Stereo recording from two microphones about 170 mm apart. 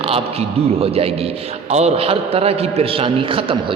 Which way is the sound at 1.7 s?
40° right (ahead or behind).